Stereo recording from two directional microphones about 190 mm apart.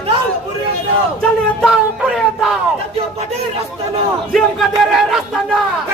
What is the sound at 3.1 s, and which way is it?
Speech, 30° right (ahead or behind).